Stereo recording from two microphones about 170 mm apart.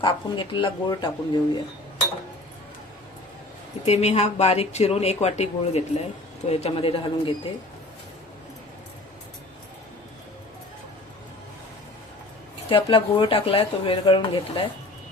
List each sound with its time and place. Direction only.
0.0 s speech: 30° left (ahead or behind)
3.8 s speech: 40° left (ahead or behind)
12.6 s speech: 30° left (ahead or behind)